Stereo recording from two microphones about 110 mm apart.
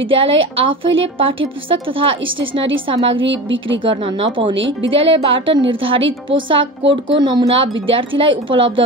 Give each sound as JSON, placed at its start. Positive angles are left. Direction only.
{"t": 0.1, "sound": "a woman's voice", "side_deg": -55}